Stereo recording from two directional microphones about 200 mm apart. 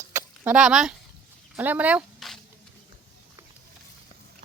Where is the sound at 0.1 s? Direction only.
10° right (ahead or behind).